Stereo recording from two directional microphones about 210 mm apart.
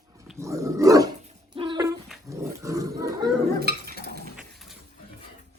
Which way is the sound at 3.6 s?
50° right (ahead or behind).